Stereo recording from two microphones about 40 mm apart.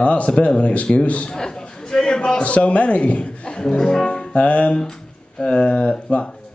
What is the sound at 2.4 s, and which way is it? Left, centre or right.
Speech, left.